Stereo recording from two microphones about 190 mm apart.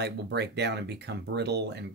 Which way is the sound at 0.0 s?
60° right (ahead or behind).